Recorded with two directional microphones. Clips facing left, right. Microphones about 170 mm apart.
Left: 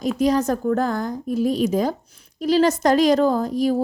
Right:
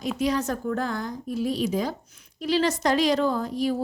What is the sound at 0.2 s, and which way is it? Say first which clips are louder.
A woman's voice: left 6 dB; 40° left (ahead or behind).